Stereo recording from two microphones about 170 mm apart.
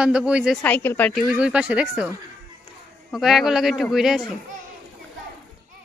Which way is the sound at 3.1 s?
Centre (ahead or behind).